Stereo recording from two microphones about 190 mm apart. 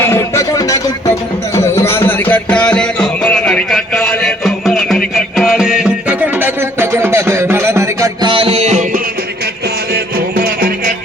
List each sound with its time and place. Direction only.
0.0 s music: 15° left (ahead or behind); by 9.0 s 35° right (ahead or behind)
9.9 s music: 50° right (ahead or behind)